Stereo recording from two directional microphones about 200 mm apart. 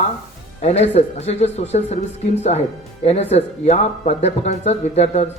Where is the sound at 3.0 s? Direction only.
35° left (ahead or behind).